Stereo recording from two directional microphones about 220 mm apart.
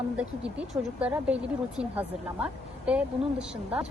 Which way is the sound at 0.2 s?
5° right (ahead or behind).